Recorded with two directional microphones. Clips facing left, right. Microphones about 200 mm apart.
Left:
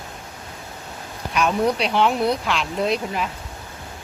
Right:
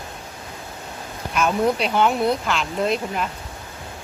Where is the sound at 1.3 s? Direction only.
Centre (ahead or behind).